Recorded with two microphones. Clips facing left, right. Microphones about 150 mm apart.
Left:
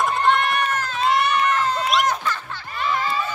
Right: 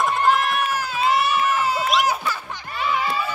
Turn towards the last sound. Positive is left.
turn(degrees=-10)  # may be behind; listen again after turning